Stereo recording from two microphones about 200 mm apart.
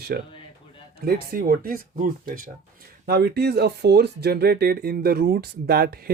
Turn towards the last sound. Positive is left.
turn(degrees=-50)  # may be behind; listen again after turning